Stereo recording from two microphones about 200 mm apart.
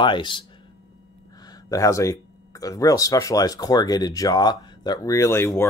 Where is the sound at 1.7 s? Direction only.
15° left (ahead or behind).